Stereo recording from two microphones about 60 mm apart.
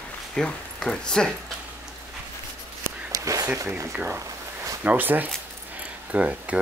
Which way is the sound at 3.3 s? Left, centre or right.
Right.